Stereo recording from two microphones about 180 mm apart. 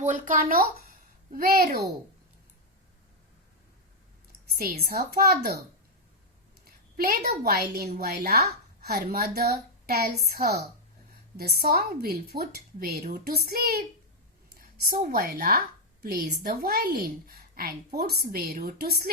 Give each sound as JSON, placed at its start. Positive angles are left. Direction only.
{"t": 0.0, "sound": "a woman's voice", "side_deg": -45}
{"t": 4.5, "sound": "a woman's voice", "side_deg": -55}
{"t": 6.9, "sound": "a woman's voice", "side_deg": -60}